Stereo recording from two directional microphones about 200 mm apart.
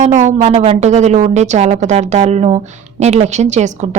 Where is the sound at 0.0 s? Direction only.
35° right (ahead or behind).